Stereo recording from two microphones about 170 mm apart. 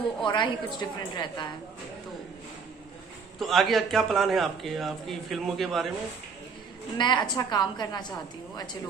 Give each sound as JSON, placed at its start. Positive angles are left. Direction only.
{"t": 0.2, "sound": "a woman's voice", "side_deg": 30}
{"t": 3.3, "sound": "a man's voice", "side_deg": 0}
{"t": 7.0, "sound": "a woman's voice", "side_deg": 25}